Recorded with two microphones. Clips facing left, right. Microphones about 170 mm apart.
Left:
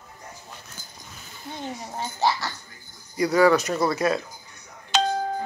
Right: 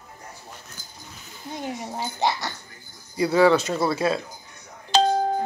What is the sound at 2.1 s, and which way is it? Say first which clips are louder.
Speech: left 1 dB; 15° right (ahead or behind).